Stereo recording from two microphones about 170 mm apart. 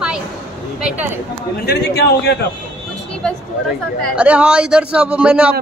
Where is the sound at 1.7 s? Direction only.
80° left.